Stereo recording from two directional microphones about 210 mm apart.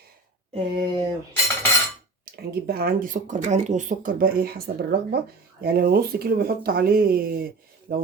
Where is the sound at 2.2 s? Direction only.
50° right (ahead or behind).